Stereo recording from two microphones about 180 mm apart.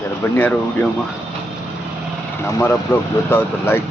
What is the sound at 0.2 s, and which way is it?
Speech, 10° left (ahead or behind).